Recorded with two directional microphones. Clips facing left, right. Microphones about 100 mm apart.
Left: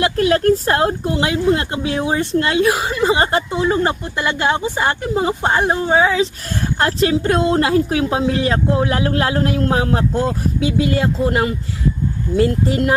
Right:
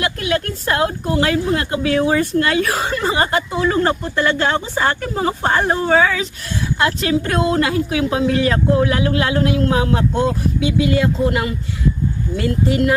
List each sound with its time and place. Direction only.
0.0 s a sound: 35° left (ahead or behind)
0.6 s speech: 35° left (ahead or behind); by 2.8 s 20° left (ahead or behind)
2.8 s chuckle: 5° left (ahead or behind)
3.1 s speech: 25° left (ahead or behind)
6.7 s speech: 35° left (ahead or behind)